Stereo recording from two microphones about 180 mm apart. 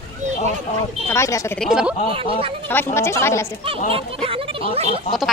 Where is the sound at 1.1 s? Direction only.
15° left (ahead or behind).